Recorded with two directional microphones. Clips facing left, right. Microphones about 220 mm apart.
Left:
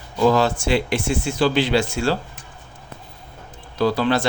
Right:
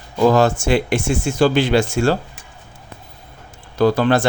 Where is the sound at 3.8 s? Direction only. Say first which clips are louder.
Right 4 dB; 50° right (ahead or behind).